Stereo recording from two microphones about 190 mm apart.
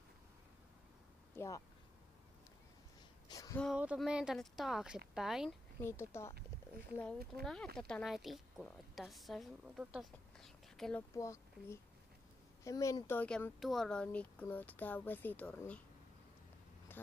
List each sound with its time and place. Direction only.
1.3 s speech: 15° left (ahead or behind)
3.3 s a sound: 20° left (ahead or behind)
3.7 s speech: 5° right (ahead or behind)
5.8 s speech: 15° left (ahead or behind)
11.1 s speech: 15° left (ahead or behind)